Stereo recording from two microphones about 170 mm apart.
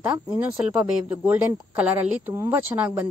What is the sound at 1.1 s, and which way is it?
Speech, 10° right (ahead or behind).